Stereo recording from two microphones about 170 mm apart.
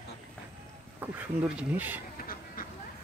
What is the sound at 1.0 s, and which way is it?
Speech, 10° right (ahead or behind).